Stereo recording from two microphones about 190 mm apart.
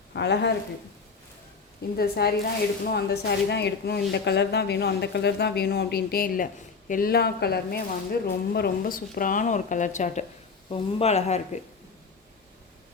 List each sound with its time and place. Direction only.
0.1 s speech: 65° left (ahead or behind)
2.0 s speech: 55° left (ahead or behind); by 11.3 s 35° left (ahead or behind)